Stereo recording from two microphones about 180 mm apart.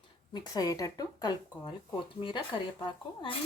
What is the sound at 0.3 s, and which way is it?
Speech, 20° left (ahead or behind).